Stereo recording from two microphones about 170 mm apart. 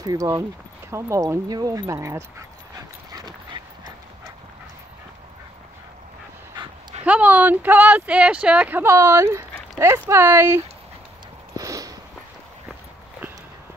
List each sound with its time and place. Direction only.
0.0 s speech: 20° right (ahead or behind)
3.1 s dog: 20° right (ahead or behind)
6.5 s dog: 25° right (ahead or behind)
7.1 s speech: 10° right (ahead or behind)
11.5 s a sound: 20° right (ahead or behind)